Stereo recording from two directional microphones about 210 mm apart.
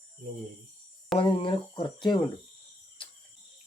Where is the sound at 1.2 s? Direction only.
25° left (ahead or behind).